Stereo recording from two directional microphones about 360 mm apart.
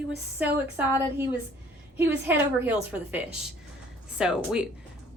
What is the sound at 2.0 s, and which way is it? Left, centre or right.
A woman's voice, centre.